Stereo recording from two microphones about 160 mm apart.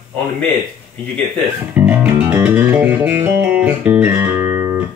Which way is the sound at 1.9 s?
10° right (ahead or behind).